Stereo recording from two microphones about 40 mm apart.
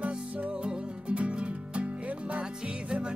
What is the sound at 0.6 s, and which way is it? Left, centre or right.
Music, right.